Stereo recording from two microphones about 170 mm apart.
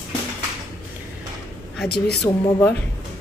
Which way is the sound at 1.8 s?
70° left (ahead or behind).